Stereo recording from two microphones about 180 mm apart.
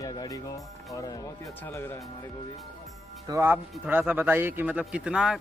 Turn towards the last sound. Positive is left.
turn(degrees=-5)  # may be behind; listen again after turning